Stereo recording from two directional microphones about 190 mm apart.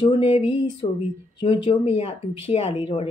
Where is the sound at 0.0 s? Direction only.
30° left (ahead or behind).